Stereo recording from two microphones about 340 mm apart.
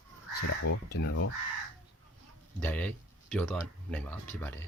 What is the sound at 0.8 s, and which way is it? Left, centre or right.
Speech, left.